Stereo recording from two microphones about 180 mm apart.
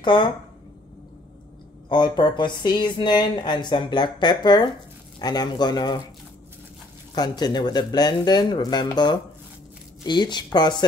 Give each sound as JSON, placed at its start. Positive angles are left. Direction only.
{"t": 0.0, "sound": "a woman's voice", "side_deg": 25}
{"t": 1.9, "sound": "speech", "side_deg": 25}
{"t": 7.2, "sound": "speech", "side_deg": 25}